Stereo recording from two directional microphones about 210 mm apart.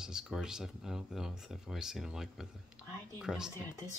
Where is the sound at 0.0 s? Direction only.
5° right (ahead or behind).